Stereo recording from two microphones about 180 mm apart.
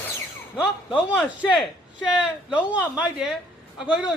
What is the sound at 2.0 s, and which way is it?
A man's voice, 5° right (ahead or behind).